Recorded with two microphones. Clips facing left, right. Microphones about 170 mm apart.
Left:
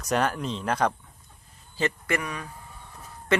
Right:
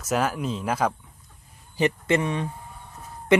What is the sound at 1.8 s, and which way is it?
Speech, 20° right (ahead or behind).